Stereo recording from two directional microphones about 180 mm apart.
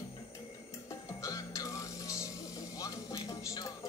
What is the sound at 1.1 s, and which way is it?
Music, 15° left (ahead or behind).